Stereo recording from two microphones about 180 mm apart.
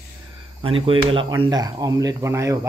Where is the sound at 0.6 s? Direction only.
30° right (ahead or behind).